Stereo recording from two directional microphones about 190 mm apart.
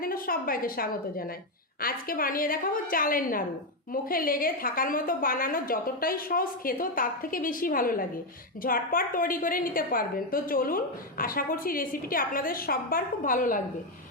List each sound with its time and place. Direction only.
0.0 s a woman's voice: 50° left (ahead or behind)